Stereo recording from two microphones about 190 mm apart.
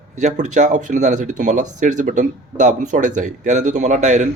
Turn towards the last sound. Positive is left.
turn(degrees=-40)  # may be behind; listen again after turning